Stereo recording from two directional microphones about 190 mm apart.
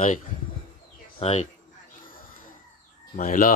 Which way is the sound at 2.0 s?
45° left (ahead or behind).